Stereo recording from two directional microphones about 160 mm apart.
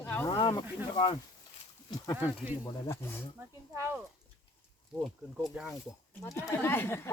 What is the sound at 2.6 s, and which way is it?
Speech, 15° left (ahead or behind).